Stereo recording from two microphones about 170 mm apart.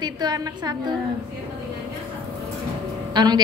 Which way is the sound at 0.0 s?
25° right (ahead or behind).